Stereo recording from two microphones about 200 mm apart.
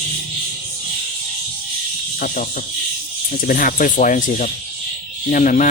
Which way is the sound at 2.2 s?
45° left (ahead or behind).